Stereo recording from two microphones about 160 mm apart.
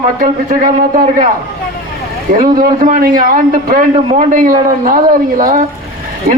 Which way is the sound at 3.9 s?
40° right (ahead or behind).